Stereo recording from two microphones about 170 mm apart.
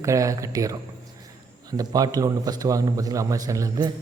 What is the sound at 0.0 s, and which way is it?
Speech, 20° right (ahead or behind).